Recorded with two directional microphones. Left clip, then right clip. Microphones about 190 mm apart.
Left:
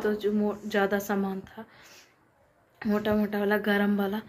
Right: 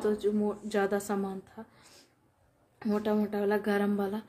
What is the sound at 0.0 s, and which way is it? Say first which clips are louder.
Speech: left 2 dB; 10° right (ahead or behind).